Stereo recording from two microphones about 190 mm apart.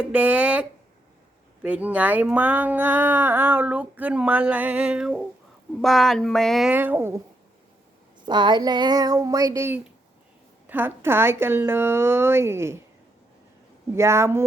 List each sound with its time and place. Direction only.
0.0 s speech: 5° right (ahead or behind)
1.6 s speech: 10° right (ahead or behind)
8.2 s speech: 25° right (ahead or behind)
13.9 s speech: 15° right (ahead or behind)